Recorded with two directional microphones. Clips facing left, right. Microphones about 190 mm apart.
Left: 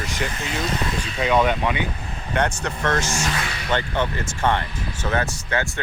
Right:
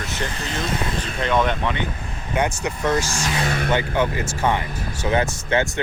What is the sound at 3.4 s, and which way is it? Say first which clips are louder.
Vehicle: right 9 dB; 50° right (ahead or behind).